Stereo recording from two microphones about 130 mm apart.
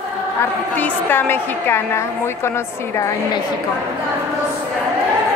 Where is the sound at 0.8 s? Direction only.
15° left (ahead or behind).